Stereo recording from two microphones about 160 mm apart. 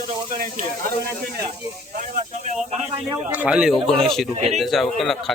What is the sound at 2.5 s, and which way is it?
Speech, 45° right (ahead or behind).